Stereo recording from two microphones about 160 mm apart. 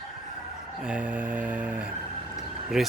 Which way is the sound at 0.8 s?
5° right (ahead or behind).